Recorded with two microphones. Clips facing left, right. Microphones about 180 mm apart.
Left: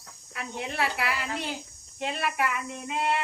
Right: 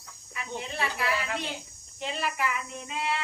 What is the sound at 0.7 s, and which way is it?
A woman's voice, 70° left (ahead or behind).